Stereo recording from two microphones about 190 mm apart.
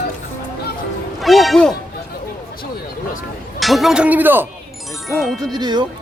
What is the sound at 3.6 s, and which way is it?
Speech, centre (ahead or behind).